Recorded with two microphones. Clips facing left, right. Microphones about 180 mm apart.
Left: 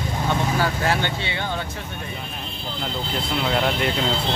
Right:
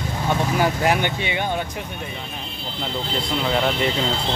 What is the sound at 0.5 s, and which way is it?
Speech, 15° right (ahead or behind).